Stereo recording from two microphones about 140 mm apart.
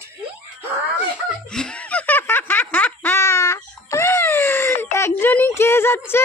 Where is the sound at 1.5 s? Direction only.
5° left (ahead or behind).